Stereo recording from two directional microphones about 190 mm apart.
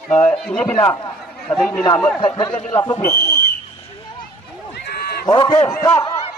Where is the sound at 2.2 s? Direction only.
25° left (ahead or behind).